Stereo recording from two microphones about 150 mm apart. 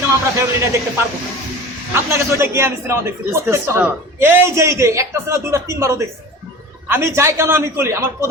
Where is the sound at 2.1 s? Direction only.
15° right (ahead or behind).